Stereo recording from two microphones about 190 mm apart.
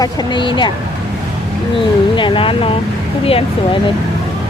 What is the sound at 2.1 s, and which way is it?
Speech, 25° left (ahead or behind).